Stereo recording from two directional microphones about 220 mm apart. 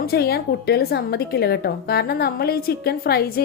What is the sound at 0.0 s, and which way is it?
A woman's voice, 45° left (ahead or behind).